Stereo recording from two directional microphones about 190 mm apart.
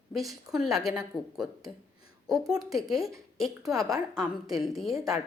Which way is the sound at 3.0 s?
15° right (ahead or behind).